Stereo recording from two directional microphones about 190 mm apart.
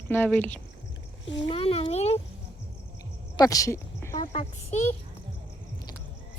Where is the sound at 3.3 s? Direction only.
20° left (ahead or behind).